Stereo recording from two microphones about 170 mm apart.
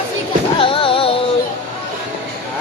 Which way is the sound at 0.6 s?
30° left (ahead or behind).